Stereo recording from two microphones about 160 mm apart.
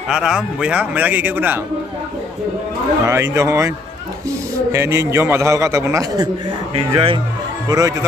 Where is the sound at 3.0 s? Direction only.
15° right (ahead or behind).